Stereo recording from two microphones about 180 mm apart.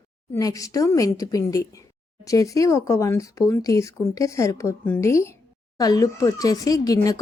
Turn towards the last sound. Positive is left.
turn(degrees=20)  # may be behind; listen again after turning